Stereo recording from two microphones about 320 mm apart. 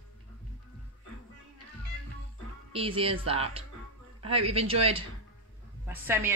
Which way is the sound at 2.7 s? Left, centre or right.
Centre.